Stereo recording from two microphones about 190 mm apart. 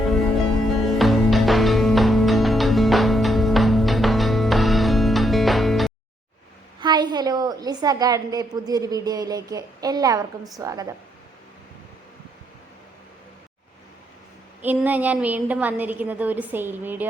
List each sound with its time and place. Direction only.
0.9 s music: centre (ahead or behind)
6.7 s a woman's voice: 20° right (ahead or behind)
14.6 s a woman's voice: 10° right (ahead or behind)